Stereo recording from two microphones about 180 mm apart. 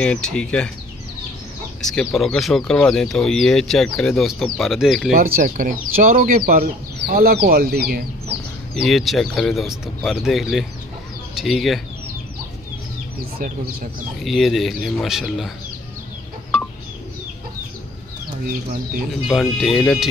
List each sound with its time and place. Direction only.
0.0 s speech: 5° left (ahead or behind)
1.8 s speech: centre (ahead or behind)
5.1 s speech: 55° right (ahead or behind)
8.8 s speech: centre (ahead or behind)
14.2 s speech: centre (ahead or behind)
19.2 s speech: centre (ahead or behind)